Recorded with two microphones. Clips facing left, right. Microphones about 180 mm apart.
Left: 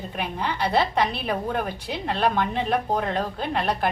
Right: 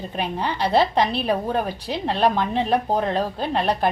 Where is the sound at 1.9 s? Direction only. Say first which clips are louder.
Right 3 dB; 15° right (ahead or behind).